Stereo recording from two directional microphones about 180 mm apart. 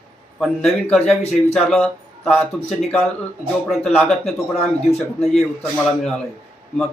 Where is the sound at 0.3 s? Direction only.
Centre (ahead or behind).